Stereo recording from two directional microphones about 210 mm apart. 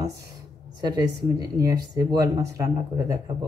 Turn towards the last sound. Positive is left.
turn(degrees=-15)  # may be behind; listen again after turning